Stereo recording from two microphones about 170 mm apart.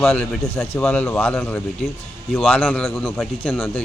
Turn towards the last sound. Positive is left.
turn(degrees=0)  # may be behind; listen again after turning